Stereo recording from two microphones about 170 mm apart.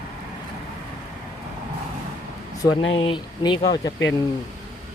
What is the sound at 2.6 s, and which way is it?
Speech, 25° left (ahead or behind).